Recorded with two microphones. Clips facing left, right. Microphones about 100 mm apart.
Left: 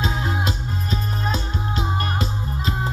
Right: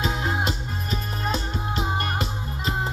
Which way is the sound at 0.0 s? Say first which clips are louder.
Left 1 dB; 40° left (ahead or behind).